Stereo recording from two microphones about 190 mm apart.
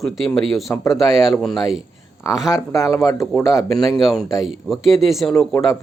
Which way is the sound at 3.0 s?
15° left (ahead or behind).